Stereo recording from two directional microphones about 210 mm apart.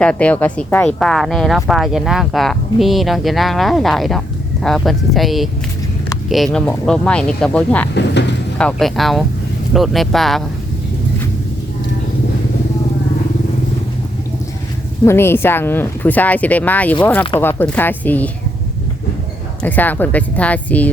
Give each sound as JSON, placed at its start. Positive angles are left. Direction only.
{"t": 0.0, "sound": "speech", "side_deg": 5}
{"t": 7.9, "sound": "speech", "side_deg": 55}
{"t": 8.5, "sound": "speech", "side_deg": 5}
{"t": 15.0, "sound": "speech", "side_deg": 10}
{"t": 19.6, "sound": "speech", "side_deg": 10}